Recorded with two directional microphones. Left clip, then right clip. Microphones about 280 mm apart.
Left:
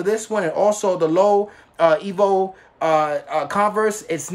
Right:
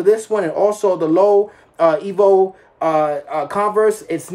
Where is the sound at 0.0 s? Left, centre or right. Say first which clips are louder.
Right 5 dB; centre.